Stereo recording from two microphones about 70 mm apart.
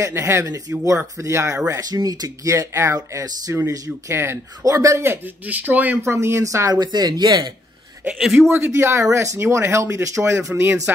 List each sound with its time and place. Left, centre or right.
0.0 s speech: right
1.7 s speech: right
2.7 s speech: right
5.5 s speech: right
6.0 s speech: right
6.7 s speech: right
8.4 s speech: right